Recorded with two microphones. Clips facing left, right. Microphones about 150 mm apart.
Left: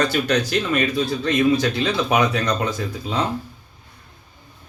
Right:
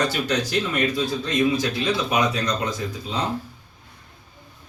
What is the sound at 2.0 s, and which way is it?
Speech, 60° left (ahead or behind).